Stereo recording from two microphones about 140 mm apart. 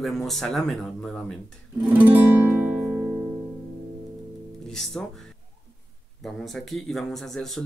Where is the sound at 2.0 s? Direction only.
15° right (ahead or behind).